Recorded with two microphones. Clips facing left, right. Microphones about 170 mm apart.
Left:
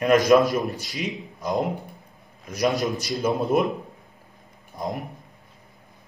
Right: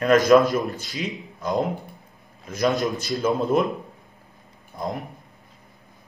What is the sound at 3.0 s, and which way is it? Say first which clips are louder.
Speech: right 1 dB; 15° left (ahead or behind).